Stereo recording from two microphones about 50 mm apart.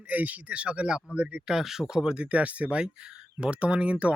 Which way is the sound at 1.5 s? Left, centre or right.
Centre.